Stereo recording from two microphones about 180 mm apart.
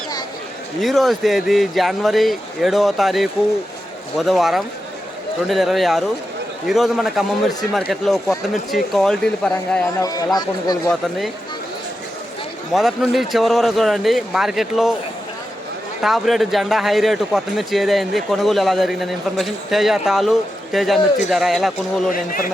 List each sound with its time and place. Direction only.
0.8 s speech: centre (ahead or behind)
10.0 s speech: 20° left (ahead or behind)
12.7 s speech: centre (ahead or behind)
16.0 s speech: centre (ahead or behind)
22.1 s a man's voice: 50° left (ahead or behind)